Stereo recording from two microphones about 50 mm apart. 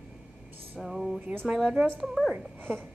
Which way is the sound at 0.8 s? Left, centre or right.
Centre.